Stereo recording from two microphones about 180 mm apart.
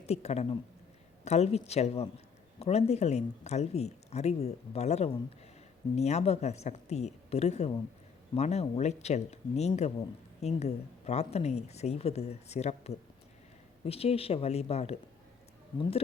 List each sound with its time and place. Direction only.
0.1 s speech: 35° left (ahead or behind)